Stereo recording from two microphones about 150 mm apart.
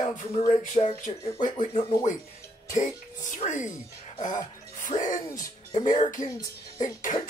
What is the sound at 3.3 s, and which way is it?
Speech, 55° left (ahead or behind).